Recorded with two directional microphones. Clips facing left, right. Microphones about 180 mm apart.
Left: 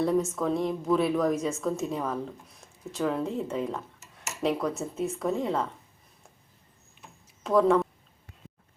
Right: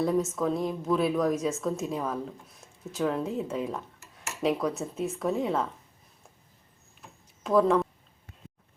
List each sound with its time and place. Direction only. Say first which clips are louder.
0.0 s a woman's voice: left 1 dB; centre (ahead or behind)
7.4 s speech: left 1 dB; centre (ahead or behind)